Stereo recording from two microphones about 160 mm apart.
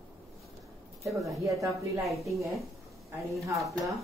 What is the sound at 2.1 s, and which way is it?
Speech, centre (ahead or behind).